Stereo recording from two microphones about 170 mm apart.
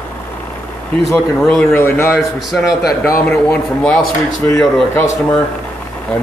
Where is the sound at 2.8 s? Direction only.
65° left (ahead or behind).